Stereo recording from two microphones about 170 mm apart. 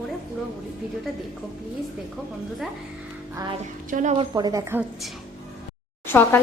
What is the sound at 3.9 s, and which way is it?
Speech, 45° right (ahead or behind).